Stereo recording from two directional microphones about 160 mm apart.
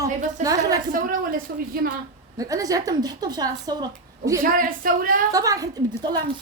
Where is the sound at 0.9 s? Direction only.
60° right (ahead or behind).